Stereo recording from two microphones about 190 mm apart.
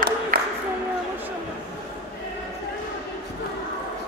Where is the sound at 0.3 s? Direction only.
50° right (ahead or behind).